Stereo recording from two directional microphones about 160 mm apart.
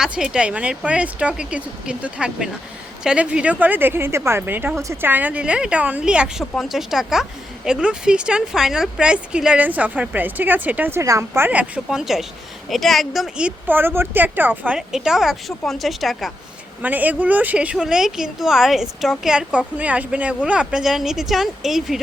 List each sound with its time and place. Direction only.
0.0 s a woman's voice: 5° right (ahead or behind)